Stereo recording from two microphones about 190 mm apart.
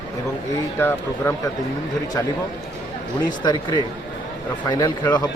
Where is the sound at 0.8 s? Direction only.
10° left (ahead or behind).